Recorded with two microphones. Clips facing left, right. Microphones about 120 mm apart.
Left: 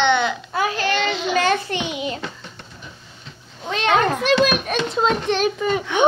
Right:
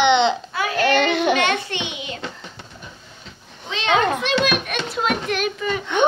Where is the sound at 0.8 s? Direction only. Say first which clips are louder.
Right 4 dB; 55° right (ahead or behind).